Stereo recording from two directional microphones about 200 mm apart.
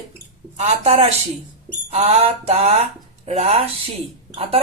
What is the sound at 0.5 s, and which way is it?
Speech, 35° right (ahead or behind).